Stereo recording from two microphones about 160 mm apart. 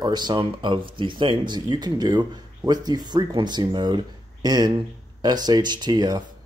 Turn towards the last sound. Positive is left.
turn(degrees=-25)  # may be behind; listen again after turning